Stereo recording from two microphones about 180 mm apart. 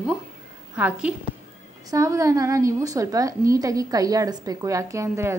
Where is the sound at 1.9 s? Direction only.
15° right (ahead or behind).